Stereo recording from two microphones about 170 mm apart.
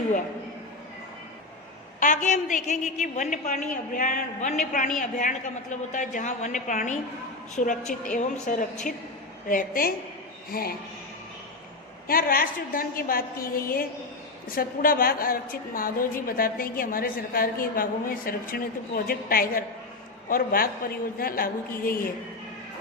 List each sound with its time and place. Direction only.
2.0 s a woman's voice: 45° left (ahead or behind)
12.0 s a woman's voice: 60° left (ahead or behind)